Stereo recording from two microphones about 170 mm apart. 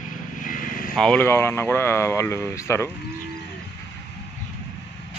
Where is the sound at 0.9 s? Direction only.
5° left (ahead or behind).